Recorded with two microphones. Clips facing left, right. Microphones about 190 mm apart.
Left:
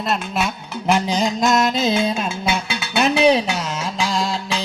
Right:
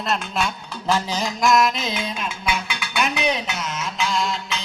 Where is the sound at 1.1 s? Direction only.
20° left (ahead or behind).